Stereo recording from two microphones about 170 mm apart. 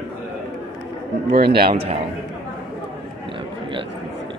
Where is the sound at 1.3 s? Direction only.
65° right (ahead or behind).